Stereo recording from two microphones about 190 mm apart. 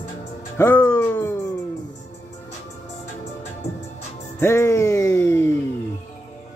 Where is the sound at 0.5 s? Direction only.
10° left (ahead or behind).